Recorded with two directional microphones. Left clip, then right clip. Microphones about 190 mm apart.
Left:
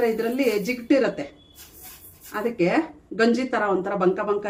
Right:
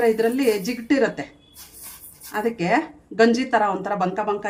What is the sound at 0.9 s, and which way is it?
Speech, 45° right (ahead or behind).